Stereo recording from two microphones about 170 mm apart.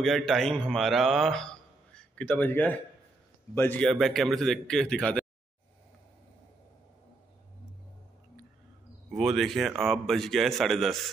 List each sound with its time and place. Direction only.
0.0 s a man's voice: centre (ahead or behind)
3.8 s a man's voice: centre (ahead or behind)
9.1 s a man's voice: centre (ahead or behind)